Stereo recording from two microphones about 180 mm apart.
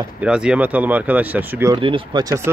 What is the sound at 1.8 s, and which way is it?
Speech, 30° right (ahead or behind).